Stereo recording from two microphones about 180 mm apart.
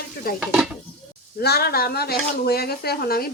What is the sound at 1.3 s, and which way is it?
Speech, 60° left (ahead or behind).